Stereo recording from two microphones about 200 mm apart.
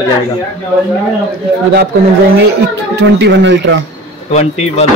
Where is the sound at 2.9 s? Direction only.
60° right (ahead or behind).